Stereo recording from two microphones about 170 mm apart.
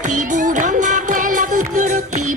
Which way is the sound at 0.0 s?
45° right (ahead or behind).